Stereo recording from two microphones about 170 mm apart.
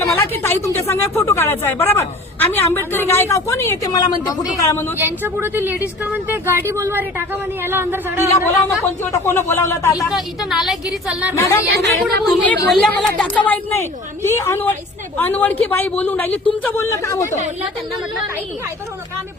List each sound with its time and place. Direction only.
0.1 s a woman's voice: 10° left (ahead or behind)
4.9 s speech: 10° right (ahead or behind)
8.7 s a woman's voice: 15° left (ahead or behind)
10.1 s a woman's voice: centre (ahead or behind)
11.7 s a woman's voice: 70° right (ahead or behind)
12.4 s a woman's voice: 10° left (ahead or behind)